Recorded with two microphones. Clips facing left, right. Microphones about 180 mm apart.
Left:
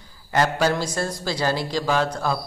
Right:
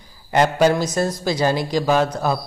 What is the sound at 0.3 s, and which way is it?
Speech, 20° right (ahead or behind).